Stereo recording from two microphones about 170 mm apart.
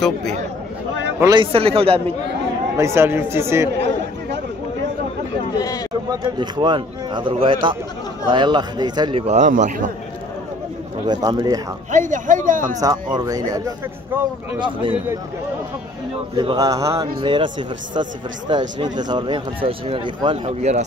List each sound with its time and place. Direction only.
1.2 s a man's voice: 30° right (ahead or behind)
2.8 s a man's voice: 15° right (ahead or behind)
3.7 s chatter: 90° right
6.0 s speech: 25° right (ahead or behind); by 9.8 s 50° right (ahead or behind)
11.1 s speech: 25° right (ahead or behind)
11.9 s speech: 50° right (ahead or behind)
12.8 s speech: 20° right (ahead or behind)
16.3 s speech: 25° right (ahead or behind)